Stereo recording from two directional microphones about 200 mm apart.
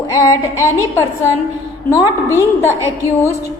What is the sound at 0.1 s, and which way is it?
A woman's voice, 15° left (ahead or behind).